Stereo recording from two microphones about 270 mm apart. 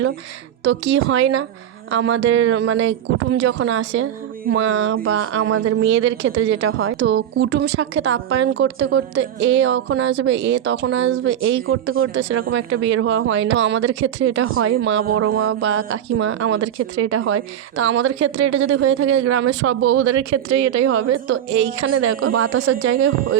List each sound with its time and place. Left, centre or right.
0.6 s speech: right